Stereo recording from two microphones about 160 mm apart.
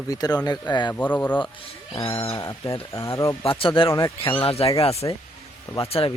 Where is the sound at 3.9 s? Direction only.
20° left (ahead or behind).